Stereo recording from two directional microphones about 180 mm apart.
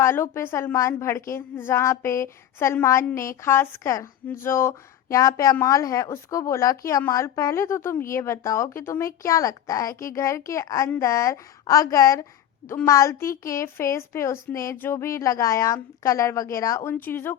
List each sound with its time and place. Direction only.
0.0 s a woman's voice: 15° left (ahead or behind)